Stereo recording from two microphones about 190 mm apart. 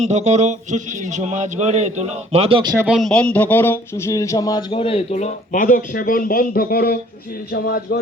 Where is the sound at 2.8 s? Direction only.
Centre (ahead or behind).